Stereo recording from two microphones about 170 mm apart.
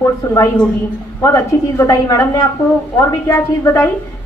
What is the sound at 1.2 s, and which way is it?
A woman's voice, 20° left (ahead or behind).